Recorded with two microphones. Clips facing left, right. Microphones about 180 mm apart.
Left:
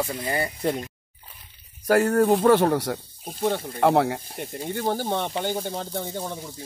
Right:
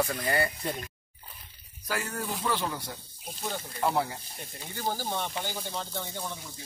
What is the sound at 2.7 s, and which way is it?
Speech, 75° left (ahead or behind).